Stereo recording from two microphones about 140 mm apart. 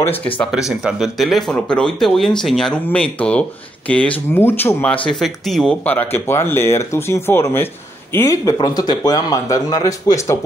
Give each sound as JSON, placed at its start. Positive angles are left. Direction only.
{"t": 0.5, "sound": "speech", "side_deg": -5}
{"t": 5.0, "sound": "speech", "side_deg": 5}